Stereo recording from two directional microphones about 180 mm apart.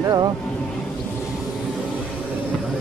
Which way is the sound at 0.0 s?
20° right (ahead or behind).